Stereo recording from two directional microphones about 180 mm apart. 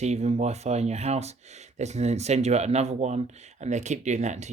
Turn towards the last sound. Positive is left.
turn(degrees=-40)  # may be behind; listen again after turning